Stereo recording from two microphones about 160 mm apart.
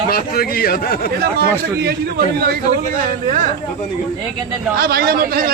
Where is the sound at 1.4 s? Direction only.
75° right (ahead or behind).